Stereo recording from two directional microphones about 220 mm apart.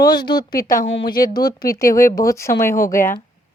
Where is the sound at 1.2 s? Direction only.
15° left (ahead or behind).